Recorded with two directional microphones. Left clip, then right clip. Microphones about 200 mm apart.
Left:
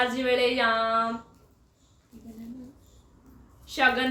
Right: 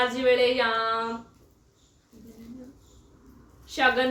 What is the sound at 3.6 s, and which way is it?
Speech, 20° left (ahead or behind).